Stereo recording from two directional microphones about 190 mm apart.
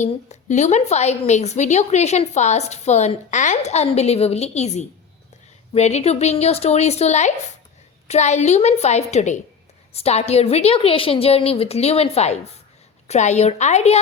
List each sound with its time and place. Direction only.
0.0 s a woman's voice: 40° left (ahead or behind)